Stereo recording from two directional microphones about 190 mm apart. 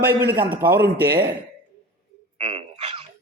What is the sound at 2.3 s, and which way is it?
Frog, 30° right (ahead or behind).